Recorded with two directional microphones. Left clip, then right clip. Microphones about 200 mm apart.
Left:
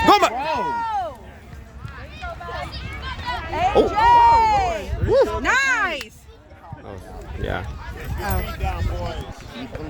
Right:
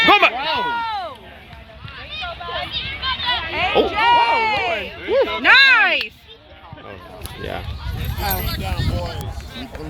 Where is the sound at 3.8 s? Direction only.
10° left (ahead or behind).